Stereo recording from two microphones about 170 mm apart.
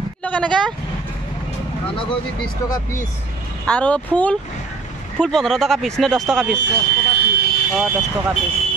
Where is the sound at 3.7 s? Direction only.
5° left (ahead or behind).